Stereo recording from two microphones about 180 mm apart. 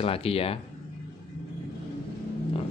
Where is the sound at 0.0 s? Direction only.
30° left (ahead or behind).